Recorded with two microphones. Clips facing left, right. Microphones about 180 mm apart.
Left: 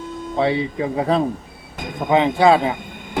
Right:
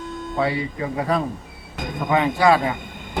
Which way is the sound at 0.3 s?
25° left (ahead or behind).